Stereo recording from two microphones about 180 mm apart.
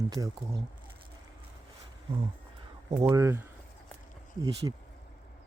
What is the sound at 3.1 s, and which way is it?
Speech, 15° right (ahead or behind).